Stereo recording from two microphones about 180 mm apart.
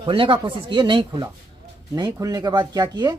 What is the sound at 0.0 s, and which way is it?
Speech, 30° right (ahead or behind).